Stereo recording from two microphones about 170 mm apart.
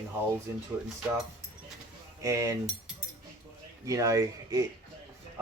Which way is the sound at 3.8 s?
20° right (ahead or behind).